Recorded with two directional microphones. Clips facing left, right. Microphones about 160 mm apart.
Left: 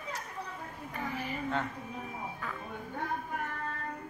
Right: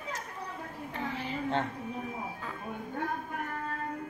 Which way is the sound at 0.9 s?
25° right (ahead or behind).